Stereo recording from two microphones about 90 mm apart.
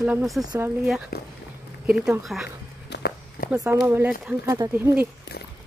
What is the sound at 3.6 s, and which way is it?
Speech, 20° right (ahead or behind).